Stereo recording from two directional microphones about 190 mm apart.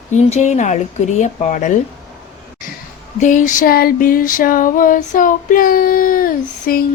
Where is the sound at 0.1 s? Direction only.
35° left (ahead or behind).